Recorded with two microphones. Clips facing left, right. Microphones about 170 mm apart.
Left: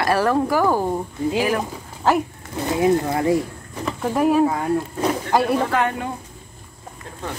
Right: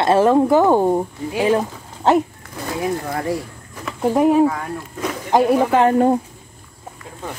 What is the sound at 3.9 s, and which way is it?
Speech, 15° right (ahead or behind).